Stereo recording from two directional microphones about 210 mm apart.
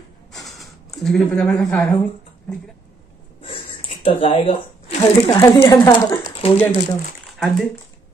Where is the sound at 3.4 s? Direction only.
25° left (ahead or behind).